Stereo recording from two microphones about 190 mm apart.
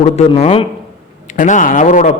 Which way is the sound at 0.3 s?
35° left (ahead or behind).